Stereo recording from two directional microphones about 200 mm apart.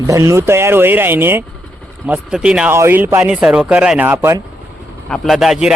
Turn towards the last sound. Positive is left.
turn(degrees=0)  # may be behind; listen again after turning